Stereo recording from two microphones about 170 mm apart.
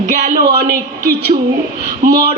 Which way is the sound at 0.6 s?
65° right (ahead or behind).